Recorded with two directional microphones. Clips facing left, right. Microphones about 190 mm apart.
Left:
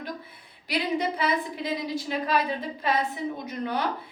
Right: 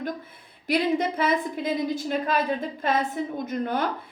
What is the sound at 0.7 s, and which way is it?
A woman's voice, 50° right (ahead or behind).